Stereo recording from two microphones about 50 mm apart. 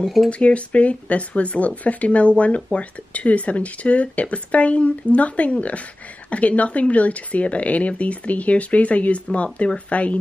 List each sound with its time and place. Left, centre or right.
0.3 s speech: left